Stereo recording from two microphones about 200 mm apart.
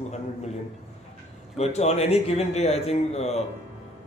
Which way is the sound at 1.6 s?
35° left (ahead or behind).